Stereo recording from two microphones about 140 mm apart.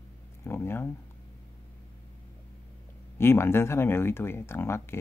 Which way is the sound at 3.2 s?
15° left (ahead or behind).